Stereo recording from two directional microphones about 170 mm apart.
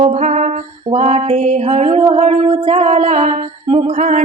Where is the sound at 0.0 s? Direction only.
45° right (ahead or behind).